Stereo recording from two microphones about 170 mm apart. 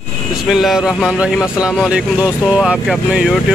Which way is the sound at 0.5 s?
Centre (ahead or behind).